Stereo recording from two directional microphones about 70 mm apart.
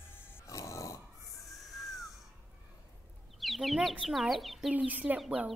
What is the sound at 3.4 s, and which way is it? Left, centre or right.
Speech, centre.